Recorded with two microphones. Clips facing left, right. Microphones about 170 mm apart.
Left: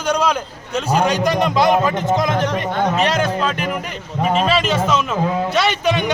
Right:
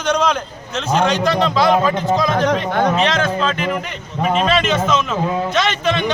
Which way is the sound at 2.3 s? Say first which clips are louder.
Right 3 dB; 60° right (ahead or behind).